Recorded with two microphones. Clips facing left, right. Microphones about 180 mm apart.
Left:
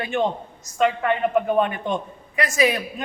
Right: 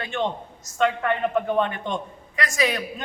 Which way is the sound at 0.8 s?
5° left (ahead or behind).